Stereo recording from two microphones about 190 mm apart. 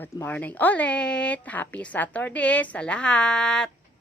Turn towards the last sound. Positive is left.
turn(degrees=5)  # may be behind; listen again after turning